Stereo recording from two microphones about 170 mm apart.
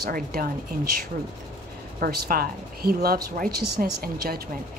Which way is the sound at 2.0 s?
60° right (ahead or behind).